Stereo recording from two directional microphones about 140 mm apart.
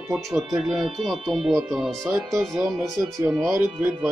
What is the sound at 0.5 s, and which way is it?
Speech, 5° right (ahead or behind).